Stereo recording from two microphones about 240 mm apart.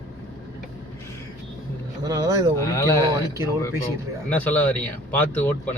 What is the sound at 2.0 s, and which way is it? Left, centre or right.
Speech, centre.